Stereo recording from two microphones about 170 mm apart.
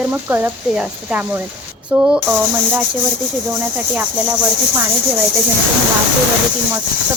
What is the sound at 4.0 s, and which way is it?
Speech, 10° right (ahead or behind).